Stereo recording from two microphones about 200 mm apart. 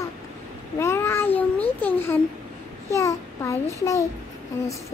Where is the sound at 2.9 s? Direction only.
15° left (ahead or behind).